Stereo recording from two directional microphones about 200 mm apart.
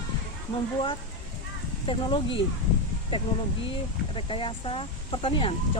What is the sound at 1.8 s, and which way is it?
Speech, 25° left (ahead or behind).